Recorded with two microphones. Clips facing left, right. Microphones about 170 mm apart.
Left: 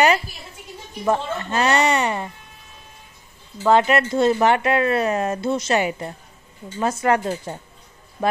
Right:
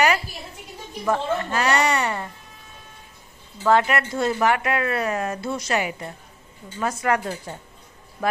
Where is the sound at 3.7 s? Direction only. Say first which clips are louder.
Left 3 dB; 25° left (ahead or behind).